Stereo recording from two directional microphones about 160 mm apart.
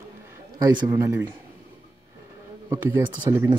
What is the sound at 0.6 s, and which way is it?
Speech, 25° right (ahead or behind).